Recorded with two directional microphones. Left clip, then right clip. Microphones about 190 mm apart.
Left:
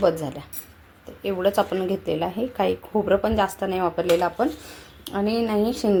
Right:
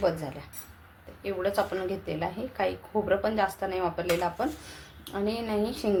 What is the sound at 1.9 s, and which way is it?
Speech, 65° left (ahead or behind).